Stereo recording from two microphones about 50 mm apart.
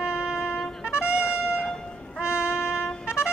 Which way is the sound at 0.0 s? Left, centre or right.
Centre.